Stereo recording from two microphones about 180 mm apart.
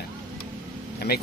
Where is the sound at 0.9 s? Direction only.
60° left (ahead or behind).